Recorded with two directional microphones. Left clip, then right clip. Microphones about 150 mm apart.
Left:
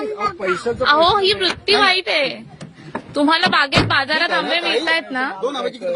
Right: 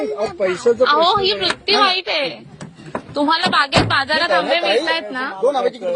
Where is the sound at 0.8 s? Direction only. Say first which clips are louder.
Left 3 dB; 60° left (ahead or behind).